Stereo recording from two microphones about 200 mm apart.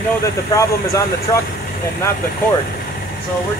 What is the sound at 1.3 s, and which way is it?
Speech, 20° left (ahead or behind).